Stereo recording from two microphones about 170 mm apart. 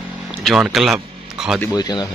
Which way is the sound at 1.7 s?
25° left (ahead or behind).